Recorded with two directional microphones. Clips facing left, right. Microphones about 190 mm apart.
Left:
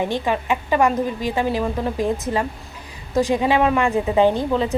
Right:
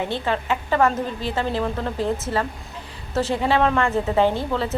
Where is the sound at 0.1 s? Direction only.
15° left (ahead or behind).